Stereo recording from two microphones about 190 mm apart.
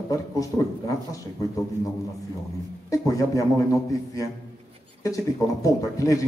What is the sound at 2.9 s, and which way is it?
A man's voice, 15° left (ahead or behind).